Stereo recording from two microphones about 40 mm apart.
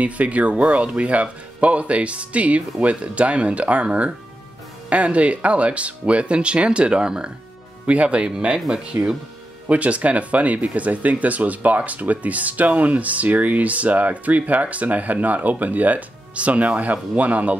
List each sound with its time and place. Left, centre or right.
0.0 s speech: right
7.8 s speech: right
8.5 s speech: centre
9.7 s speech: right